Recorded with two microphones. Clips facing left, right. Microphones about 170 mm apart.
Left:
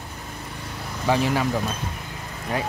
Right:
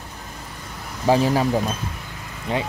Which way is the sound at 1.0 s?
40° right (ahead or behind).